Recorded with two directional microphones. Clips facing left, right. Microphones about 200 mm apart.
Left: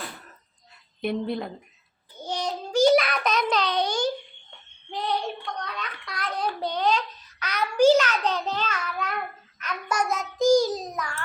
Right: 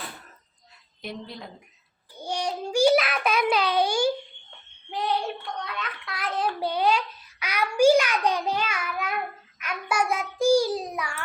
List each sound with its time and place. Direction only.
1.0 s speech: 55° left (ahead or behind)
2.2 s child singing: 10° right (ahead or behind)
5.5 s a sound: 5° right (ahead or behind)
9.6 s a child's voice: 10° right (ahead or behind)